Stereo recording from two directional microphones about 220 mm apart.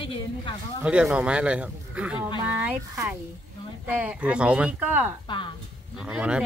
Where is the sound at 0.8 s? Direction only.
5° right (ahead or behind).